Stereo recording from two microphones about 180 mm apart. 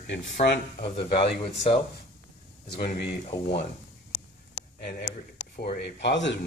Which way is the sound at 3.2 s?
35° left (ahead or behind).